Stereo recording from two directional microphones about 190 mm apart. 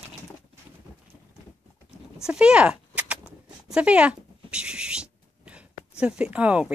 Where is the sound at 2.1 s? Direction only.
5° right (ahead or behind).